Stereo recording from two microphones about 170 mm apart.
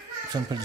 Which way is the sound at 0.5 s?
25° right (ahead or behind).